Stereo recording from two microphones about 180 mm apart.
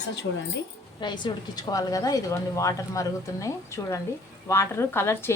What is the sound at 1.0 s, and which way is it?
A woman's voice, 25° left (ahead or behind).